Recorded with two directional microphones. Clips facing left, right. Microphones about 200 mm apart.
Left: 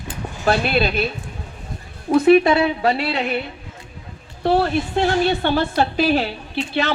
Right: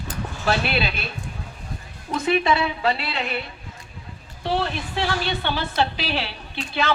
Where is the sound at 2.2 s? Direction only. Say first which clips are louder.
Left 7 dB; 50° left (ahead or behind).